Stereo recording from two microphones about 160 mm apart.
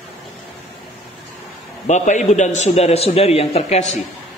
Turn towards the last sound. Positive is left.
turn(degrees=45)  # may be behind; listen again after turning